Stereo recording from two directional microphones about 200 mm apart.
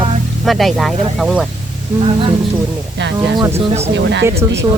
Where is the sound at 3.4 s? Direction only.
15° right (ahead or behind).